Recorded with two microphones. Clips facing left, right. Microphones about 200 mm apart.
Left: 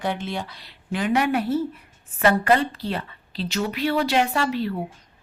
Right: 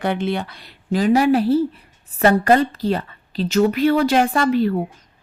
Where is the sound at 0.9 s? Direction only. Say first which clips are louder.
Right 6 dB; 35° right (ahead or behind).